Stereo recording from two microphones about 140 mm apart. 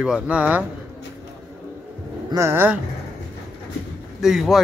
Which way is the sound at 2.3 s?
20° right (ahead or behind).